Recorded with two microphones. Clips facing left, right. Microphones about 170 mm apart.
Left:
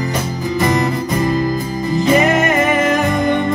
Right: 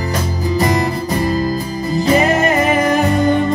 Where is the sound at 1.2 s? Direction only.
35° right (ahead or behind).